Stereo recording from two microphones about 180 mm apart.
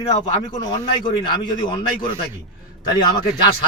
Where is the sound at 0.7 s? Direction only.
25° left (ahead or behind).